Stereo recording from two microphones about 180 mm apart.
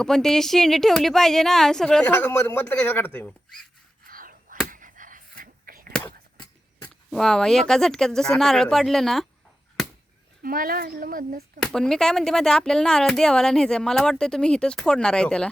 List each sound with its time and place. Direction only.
0.0 s speech: 5° left (ahead or behind)
4.0 s whispering: 50° right (ahead or behind)
6.8 s speech: centre (ahead or behind)
10.4 s speech: 55° right (ahead or behind)
11.6 s speech: 5° left (ahead or behind)